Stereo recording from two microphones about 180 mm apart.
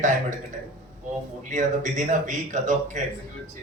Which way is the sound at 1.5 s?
40° right (ahead or behind).